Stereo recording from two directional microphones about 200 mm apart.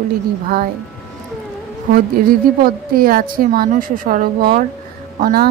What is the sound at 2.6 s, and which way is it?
A woman's voice, 45° right (ahead or behind).